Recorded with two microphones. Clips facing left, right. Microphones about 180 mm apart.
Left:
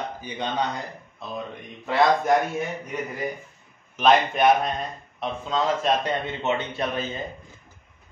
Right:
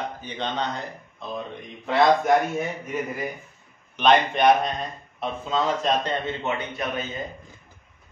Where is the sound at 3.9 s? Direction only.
Centre (ahead or behind).